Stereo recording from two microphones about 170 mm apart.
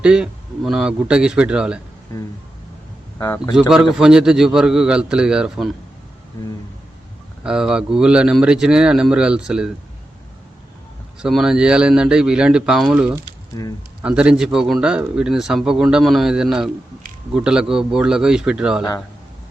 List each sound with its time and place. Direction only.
0.0 s a man's voice: 5° right (ahead or behind)
3.2 s speech: 15° left (ahead or behind)
3.7 s a man's voice: 5° right (ahead or behind)
7.4 s a man's voice: 5° right (ahead or behind)
11.2 s a man's voice: 5° right (ahead or behind)
13.5 s speech: 20° left (ahead or behind)
14.0 s a man's voice: 5° right (ahead or behind)